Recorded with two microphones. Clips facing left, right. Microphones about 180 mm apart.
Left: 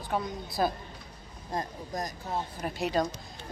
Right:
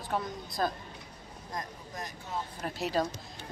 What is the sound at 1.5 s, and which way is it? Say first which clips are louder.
Speech: left 6 dB; 35° left (ahead or behind).